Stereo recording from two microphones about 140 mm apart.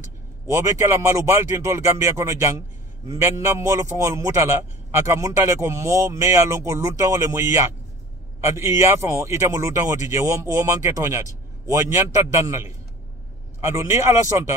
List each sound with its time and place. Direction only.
0.5 s a man's voice: 20° right (ahead or behind)